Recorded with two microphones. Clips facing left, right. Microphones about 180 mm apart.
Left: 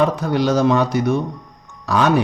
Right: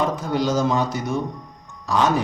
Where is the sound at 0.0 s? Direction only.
70° left (ahead or behind).